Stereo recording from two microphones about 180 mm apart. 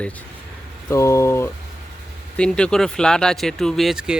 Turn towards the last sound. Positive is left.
turn(degrees=0)  # may be behind; listen again after turning